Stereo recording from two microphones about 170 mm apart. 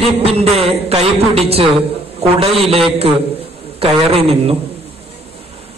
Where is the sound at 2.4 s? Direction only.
35° right (ahead or behind).